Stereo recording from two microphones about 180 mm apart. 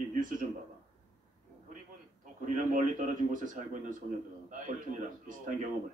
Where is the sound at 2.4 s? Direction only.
45° right (ahead or behind).